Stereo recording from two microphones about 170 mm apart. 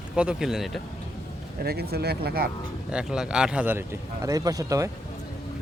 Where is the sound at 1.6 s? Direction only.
65° right (ahead or behind).